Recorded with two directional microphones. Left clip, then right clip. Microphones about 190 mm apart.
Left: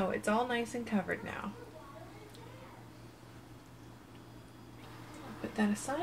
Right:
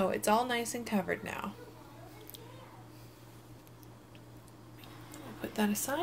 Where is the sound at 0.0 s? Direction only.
20° right (ahead or behind).